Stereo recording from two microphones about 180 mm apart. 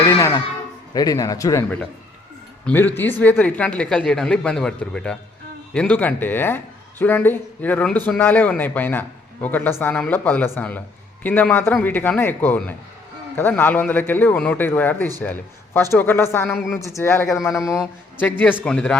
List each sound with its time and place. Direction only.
0.9 s speech: 20° left (ahead or behind)
2.6 s a man's voice: 10° left (ahead or behind)